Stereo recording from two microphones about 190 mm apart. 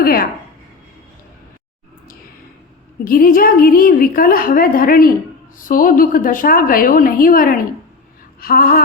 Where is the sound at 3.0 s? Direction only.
50° left (ahead or behind).